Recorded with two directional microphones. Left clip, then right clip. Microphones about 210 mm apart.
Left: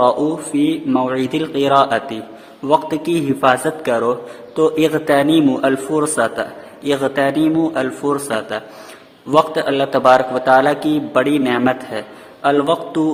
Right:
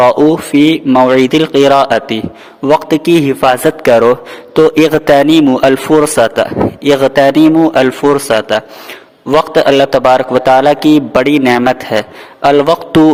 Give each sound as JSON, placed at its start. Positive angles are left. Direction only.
{"t": 0.0, "sound": "a man's voice", "side_deg": -40}